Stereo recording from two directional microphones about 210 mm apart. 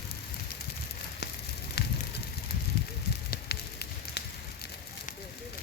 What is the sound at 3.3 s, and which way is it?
Fire, 50° left (ahead or behind).